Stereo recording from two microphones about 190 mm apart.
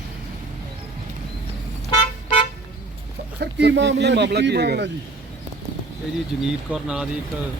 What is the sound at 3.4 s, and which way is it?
Speech, 65° right (ahead or behind).